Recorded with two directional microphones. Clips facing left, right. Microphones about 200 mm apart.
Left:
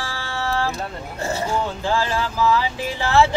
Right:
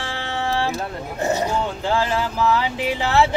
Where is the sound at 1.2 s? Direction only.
20° right (ahead or behind).